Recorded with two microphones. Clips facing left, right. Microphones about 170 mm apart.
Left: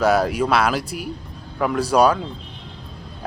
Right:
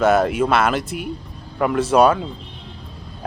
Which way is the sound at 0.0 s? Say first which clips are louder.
Right 2 dB; centre (ahead or behind).